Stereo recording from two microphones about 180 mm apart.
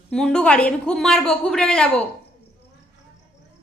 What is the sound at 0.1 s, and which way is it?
A woman's voice, 5° left (ahead or behind).